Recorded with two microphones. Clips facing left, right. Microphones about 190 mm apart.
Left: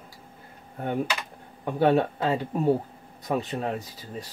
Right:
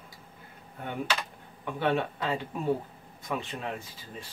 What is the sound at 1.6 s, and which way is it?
Speech, 40° left (ahead or behind).